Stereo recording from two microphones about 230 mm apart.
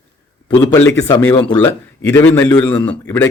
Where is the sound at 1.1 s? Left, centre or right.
Centre.